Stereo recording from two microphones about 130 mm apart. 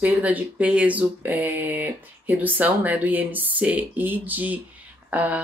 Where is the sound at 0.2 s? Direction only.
10° right (ahead or behind).